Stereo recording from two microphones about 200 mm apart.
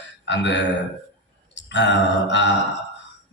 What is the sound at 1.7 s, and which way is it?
Speech, 60° left (ahead or behind).